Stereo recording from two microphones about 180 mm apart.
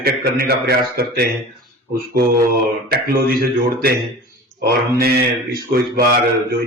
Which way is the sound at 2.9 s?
55° right (ahead or behind).